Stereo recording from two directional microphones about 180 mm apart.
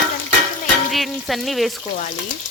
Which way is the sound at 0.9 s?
Centre (ahead or behind).